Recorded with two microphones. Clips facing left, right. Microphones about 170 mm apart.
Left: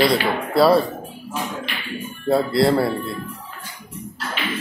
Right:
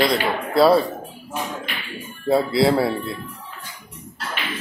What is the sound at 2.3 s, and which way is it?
Speech, centre (ahead or behind).